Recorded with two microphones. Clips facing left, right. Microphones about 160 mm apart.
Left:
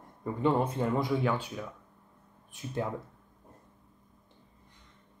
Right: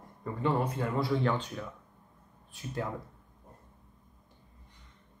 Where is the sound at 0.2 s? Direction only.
15° left (ahead or behind).